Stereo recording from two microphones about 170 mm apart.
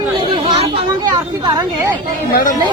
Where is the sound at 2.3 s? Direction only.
60° left (ahead or behind).